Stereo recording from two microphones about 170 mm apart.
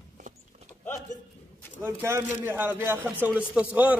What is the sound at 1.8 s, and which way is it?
A man's voice, 15° right (ahead or behind).